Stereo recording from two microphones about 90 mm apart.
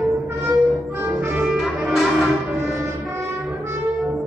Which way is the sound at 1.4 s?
5° right (ahead or behind).